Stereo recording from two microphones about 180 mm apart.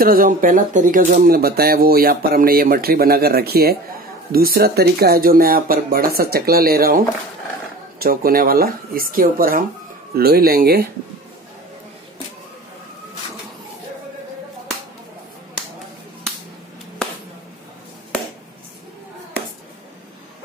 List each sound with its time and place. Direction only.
0.0 s speech: 55° right (ahead or behind)